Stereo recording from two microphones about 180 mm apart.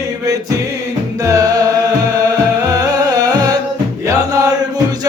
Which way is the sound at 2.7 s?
20° right (ahead or behind).